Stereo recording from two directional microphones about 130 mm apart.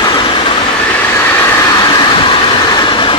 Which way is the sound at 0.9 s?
15° left (ahead or behind).